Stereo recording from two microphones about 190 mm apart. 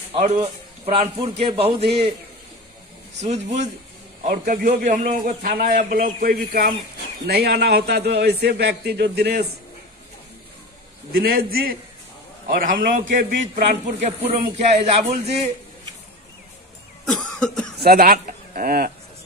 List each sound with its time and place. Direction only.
0.1 s a man's voice: 35° right (ahead or behind)
4.2 s a man's voice: 45° right (ahead or behind)
11.1 s a man's voice: 50° right (ahead or behind)
13.7 s speech: 35° right (ahead or behind)
17.0 s cough: centre (ahead or behind)
17.8 s speech: 50° right (ahead or behind)